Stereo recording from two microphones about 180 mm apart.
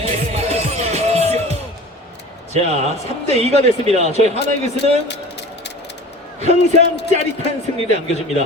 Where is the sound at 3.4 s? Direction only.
35° right (ahead or behind).